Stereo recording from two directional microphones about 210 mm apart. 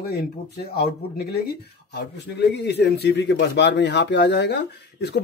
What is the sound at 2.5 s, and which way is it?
Speech, 55° left (ahead or behind).